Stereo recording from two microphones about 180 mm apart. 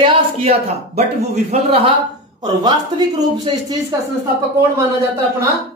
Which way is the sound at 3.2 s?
20° right (ahead or behind).